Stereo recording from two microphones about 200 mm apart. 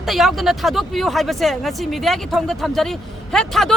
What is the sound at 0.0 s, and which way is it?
A woman's voice, centre (ahead or behind).